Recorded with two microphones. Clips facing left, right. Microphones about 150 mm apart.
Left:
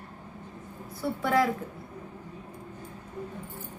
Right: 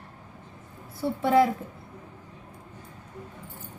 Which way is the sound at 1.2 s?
25° right (ahead or behind).